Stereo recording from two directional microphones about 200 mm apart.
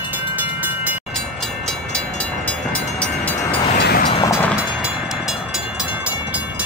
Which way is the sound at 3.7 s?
55° left (ahead or behind).